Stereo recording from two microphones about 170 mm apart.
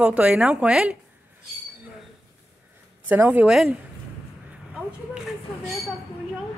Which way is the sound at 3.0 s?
10° right (ahead or behind).